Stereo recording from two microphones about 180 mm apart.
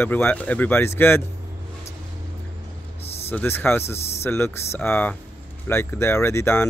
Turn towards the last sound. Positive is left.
turn(degrees=15)  # may be behind; listen again after turning